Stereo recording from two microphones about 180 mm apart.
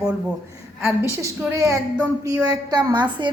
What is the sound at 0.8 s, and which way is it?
A woman's voice, 15° right (ahead or behind).